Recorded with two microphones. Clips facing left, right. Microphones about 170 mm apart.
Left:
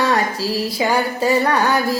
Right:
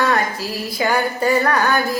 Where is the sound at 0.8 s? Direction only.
20° left (ahead or behind).